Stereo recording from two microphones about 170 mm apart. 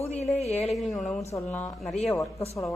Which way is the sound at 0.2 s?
40° left (ahead or behind).